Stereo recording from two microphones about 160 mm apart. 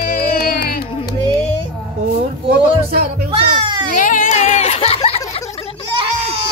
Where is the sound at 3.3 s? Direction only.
30° right (ahead or behind).